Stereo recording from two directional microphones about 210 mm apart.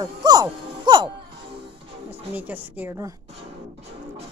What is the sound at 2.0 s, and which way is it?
Speech, 10° right (ahead or behind).